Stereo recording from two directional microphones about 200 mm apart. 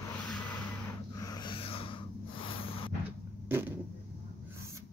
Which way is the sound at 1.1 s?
20° left (ahead or behind).